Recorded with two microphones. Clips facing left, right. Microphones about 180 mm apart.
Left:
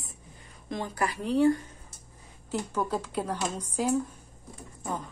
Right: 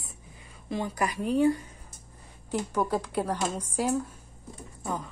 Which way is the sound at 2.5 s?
10° right (ahead or behind).